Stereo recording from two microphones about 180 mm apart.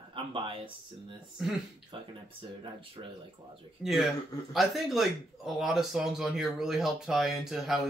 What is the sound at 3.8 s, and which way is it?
Speech, centre (ahead or behind).